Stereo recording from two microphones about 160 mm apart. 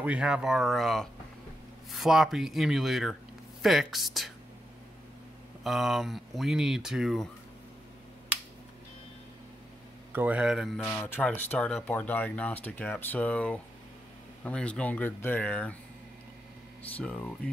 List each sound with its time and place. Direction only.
0.0 s speech: 5° right (ahead or behind)
5.6 s speech: centre (ahead or behind)
10.1 s speech: 10° right (ahead or behind)
10.9 s speech: 10° left (ahead or behind)
16.9 s speech: 10° left (ahead or behind)